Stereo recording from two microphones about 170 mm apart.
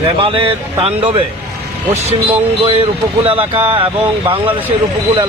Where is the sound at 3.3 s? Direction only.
35° right (ahead or behind).